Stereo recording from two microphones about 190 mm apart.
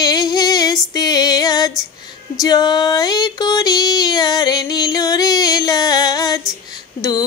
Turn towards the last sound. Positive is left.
turn(degrees=20)  # may be behind; listen again after turning